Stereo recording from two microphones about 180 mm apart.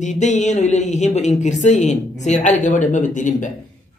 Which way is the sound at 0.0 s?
40° left (ahead or behind).